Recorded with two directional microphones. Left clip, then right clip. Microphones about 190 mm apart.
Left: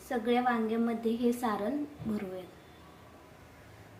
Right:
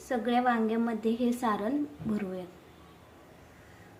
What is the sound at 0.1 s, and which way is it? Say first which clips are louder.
A woman's voice: right 2 dB; 25° right (ahead or behind).